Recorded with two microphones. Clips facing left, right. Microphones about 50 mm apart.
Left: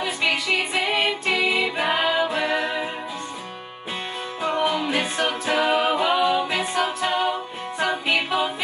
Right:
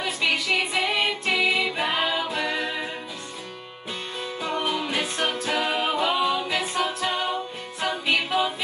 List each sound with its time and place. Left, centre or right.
0.0 s music: centre
2.3 s music: left
4.4 s music: centre
5.5 s a capella: centre
7.8 s music: centre